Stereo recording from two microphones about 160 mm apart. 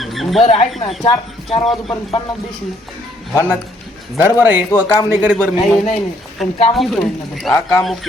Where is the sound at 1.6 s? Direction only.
Centre (ahead or behind).